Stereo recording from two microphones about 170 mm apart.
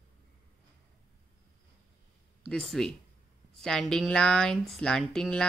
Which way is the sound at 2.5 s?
5° left (ahead or behind).